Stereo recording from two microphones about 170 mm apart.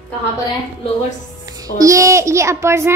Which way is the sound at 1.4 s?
20° right (ahead or behind).